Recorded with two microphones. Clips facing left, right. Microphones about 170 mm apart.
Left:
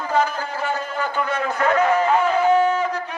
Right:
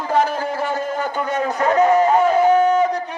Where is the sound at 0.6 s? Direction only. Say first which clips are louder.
Right 3 dB; 45° right (ahead or behind).